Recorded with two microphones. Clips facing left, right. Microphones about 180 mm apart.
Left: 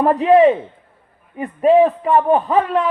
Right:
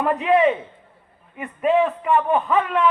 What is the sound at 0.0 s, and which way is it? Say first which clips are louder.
Speech: left 6 dB; 35° left (ahead or behind).